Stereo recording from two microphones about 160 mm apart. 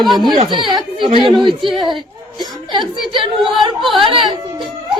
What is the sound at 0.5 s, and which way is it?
Speech, 30° right (ahead or behind).